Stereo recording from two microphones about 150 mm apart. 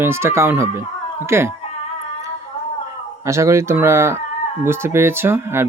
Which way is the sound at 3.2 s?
20° right (ahead or behind).